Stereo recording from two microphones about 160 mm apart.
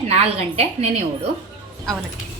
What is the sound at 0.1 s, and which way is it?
Speech, 40° right (ahead or behind).